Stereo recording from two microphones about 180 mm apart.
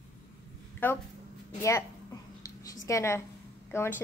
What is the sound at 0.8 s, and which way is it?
A woman's voice, 10° left (ahead or behind).